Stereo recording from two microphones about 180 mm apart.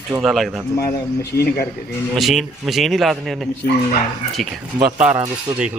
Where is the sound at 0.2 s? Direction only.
Centre (ahead or behind).